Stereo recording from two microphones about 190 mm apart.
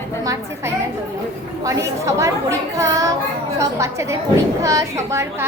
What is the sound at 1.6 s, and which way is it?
A woman's voice, 15° right (ahead or behind).